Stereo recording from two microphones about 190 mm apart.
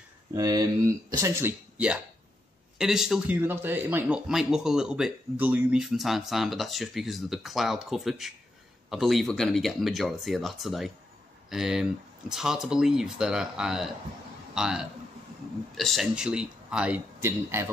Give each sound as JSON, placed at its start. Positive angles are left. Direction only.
{"t": 0.3, "sound": "a man's voice", "side_deg": -20}